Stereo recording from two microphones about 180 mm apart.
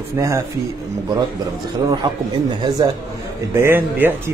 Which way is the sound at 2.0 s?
25° right (ahead or behind).